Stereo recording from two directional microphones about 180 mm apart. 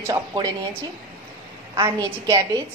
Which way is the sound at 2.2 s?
15° right (ahead or behind).